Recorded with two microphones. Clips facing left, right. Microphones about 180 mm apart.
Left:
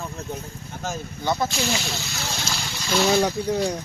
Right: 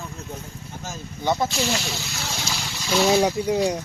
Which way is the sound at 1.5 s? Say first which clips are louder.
Right 1 dB; centre (ahead or behind).